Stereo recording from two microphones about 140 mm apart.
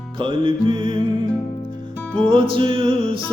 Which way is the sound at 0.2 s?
35° right (ahead or behind).